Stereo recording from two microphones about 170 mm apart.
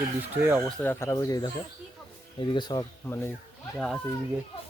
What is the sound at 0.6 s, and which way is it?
Speech, 10° left (ahead or behind).